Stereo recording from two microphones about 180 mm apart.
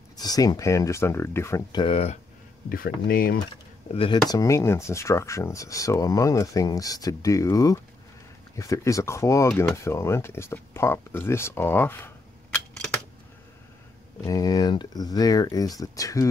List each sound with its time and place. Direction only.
0.2 s speech: 20° left (ahead or behind)
1.8 s speech: 30° left (ahead or behind)
2.7 s speech: 55° left (ahead or behind)
3.9 s speech: 30° left (ahead or behind); by 12.9 s 5° left (ahead or behind)
14.2 s speech: 20° left (ahead or behind)